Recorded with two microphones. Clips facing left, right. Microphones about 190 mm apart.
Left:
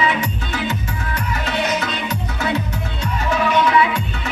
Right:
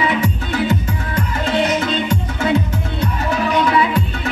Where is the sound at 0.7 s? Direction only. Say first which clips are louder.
Right 4 dB; 30° right (ahead or behind).